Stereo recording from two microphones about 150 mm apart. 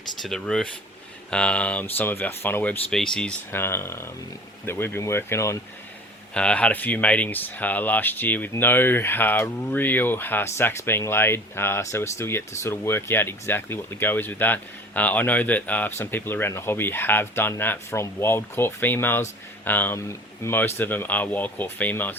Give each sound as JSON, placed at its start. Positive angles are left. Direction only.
{"t": 0.2, "sound": "speech", "side_deg": 5}
{"t": 6.3, "sound": "speech", "side_deg": 5}